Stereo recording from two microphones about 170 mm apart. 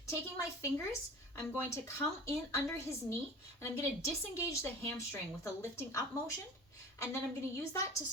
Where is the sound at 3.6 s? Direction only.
15° left (ahead or behind).